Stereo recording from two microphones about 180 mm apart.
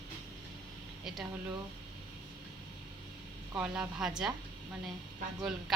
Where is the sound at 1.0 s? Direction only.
Centre (ahead or behind).